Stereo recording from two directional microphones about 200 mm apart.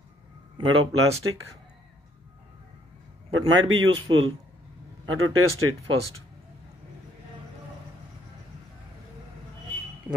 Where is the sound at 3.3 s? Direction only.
90° right.